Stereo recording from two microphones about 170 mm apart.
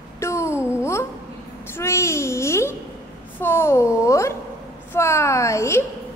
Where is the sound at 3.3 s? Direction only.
15° left (ahead or behind).